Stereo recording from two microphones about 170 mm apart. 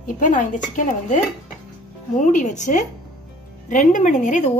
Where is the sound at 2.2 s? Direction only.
45° left (ahead or behind).